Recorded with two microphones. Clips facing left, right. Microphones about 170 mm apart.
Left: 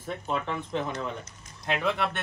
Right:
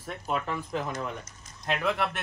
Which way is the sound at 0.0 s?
5° right (ahead or behind).